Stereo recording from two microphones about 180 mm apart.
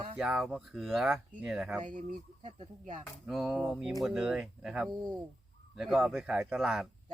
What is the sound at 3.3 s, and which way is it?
Speech, 5° right (ahead or behind).